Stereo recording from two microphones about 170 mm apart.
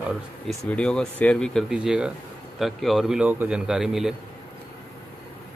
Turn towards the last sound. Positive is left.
turn(degrees=0)  # may be behind; listen again after turning